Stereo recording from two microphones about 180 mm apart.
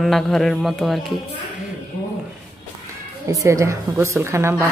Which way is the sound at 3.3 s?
15° right (ahead or behind).